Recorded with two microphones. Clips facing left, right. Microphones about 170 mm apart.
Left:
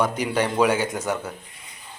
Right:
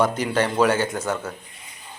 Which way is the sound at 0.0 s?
10° left (ahead or behind).